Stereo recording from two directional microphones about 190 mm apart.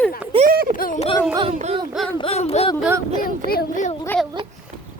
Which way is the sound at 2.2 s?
30° left (ahead or behind).